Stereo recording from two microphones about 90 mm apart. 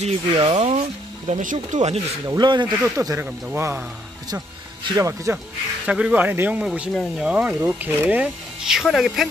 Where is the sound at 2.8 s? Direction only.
30° right (ahead or behind).